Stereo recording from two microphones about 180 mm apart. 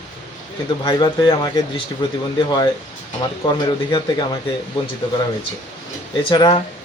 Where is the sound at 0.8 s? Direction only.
25° left (ahead or behind).